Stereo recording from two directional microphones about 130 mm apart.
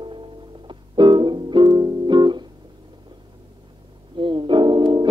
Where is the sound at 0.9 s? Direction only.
40° right (ahead or behind).